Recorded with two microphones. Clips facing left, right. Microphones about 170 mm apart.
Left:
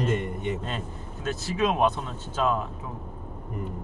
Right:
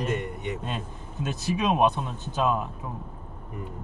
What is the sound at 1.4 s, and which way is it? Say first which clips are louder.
Speech: right 1 dB; 15° right (ahead or behind).